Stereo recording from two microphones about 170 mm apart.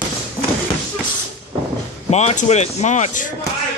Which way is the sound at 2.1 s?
40° left (ahead or behind).